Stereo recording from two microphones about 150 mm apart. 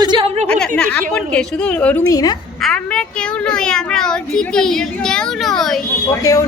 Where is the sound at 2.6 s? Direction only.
5° left (ahead or behind).